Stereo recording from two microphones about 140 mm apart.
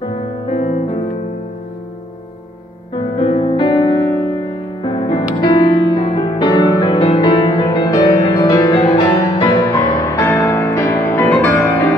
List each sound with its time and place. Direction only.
0.5 s music: 55° left (ahead or behind)
3.2 s music: 45° left (ahead or behind); by 10.2 s 30° left (ahead or behind)
10.2 s music: 15° left (ahead or behind)